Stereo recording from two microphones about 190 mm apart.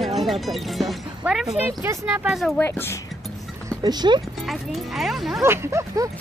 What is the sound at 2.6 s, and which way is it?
Speech, 10° left (ahead or behind).